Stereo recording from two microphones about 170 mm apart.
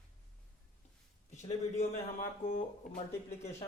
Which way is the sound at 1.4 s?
40° left (ahead or behind).